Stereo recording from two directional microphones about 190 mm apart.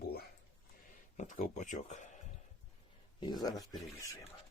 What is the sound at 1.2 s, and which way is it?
Speech, 40° left (ahead or behind).